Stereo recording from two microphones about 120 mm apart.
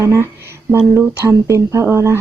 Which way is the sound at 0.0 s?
20° right (ahead or behind).